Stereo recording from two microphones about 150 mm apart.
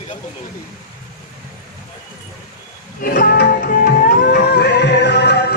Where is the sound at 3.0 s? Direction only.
80° left.